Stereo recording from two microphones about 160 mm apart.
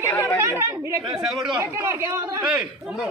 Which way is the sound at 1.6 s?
15° right (ahead or behind).